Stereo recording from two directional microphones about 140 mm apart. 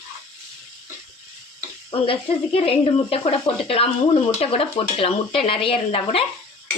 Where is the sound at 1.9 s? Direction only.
45° left (ahead or behind).